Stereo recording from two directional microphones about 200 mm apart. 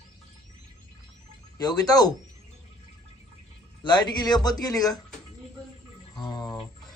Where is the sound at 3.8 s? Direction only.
20° left (ahead or behind).